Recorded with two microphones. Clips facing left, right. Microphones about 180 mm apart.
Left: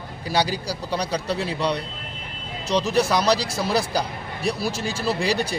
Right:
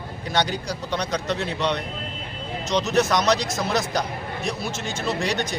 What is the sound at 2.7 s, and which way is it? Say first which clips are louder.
A man's voice: left 1 dB; 30° left (ahead or behind).